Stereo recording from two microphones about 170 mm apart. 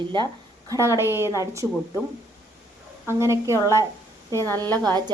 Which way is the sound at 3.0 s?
15° right (ahead or behind).